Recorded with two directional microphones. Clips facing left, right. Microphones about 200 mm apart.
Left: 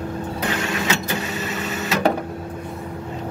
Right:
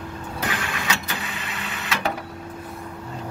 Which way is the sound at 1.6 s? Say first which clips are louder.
Left 5 dB; 40° left (ahead or behind).